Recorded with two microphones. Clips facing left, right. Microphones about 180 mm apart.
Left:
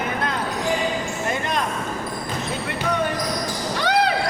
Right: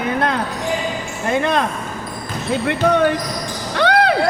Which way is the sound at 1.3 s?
65° right (ahead or behind).